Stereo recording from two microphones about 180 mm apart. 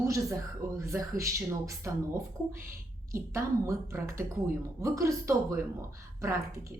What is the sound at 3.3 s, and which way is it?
Speech, 15° right (ahead or behind).